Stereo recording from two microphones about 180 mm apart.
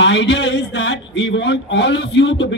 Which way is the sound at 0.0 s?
85° left.